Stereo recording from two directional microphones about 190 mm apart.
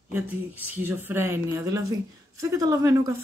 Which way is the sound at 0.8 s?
10° right (ahead or behind).